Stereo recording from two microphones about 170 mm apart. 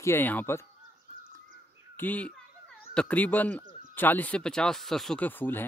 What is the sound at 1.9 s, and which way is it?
Speech, 10° left (ahead or behind).